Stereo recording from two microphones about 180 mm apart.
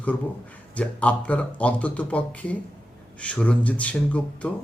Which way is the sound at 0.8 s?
5° left (ahead or behind).